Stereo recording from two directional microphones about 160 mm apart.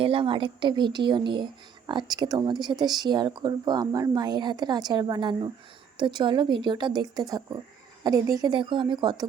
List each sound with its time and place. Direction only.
0.0 s speech: 35° right (ahead or behind)